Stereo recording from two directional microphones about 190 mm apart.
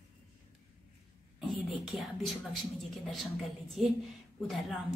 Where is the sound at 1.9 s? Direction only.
Centre (ahead or behind).